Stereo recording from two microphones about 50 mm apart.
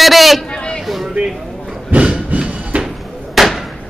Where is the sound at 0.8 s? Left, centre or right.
Centre.